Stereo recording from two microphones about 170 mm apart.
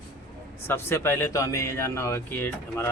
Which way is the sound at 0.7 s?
15° left (ahead or behind).